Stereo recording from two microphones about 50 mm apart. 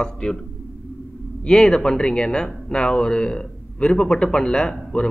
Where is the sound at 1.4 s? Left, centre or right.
Centre.